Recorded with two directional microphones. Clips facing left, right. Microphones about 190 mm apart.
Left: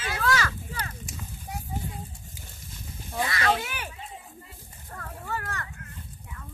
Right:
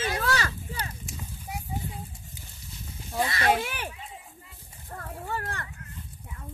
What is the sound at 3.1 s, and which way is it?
Speech, 25° right (ahead or behind).